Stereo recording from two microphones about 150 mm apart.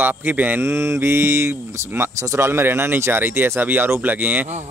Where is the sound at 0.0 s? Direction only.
10° right (ahead or behind).